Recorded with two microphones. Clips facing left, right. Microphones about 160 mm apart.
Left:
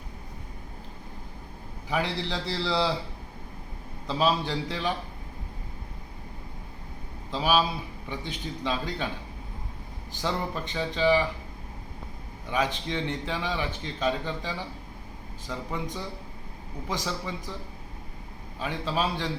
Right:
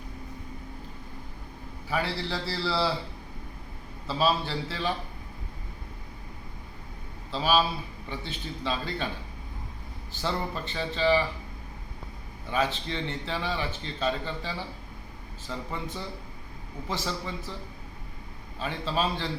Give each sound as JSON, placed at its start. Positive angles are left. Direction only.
{"t": 1.9, "sound": "a man's voice", "side_deg": 15}
{"t": 4.0, "sound": "a man's voice", "side_deg": 15}
{"t": 7.3, "sound": "a man's voice", "side_deg": 15}
{"t": 10.1, "sound": "a man's voice", "side_deg": 15}
{"t": 12.5, "sound": "a man's voice", "side_deg": 15}
{"t": 18.6, "sound": "a man's voice", "side_deg": 15}